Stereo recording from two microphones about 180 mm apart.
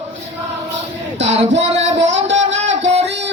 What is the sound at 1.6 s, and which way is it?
Music, 40° right (ahead or behind).